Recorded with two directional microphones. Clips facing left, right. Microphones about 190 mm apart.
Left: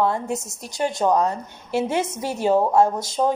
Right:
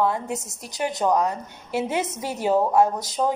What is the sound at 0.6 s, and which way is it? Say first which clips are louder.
A woman's voice: left 2 dB; 20° right (ahead or behind).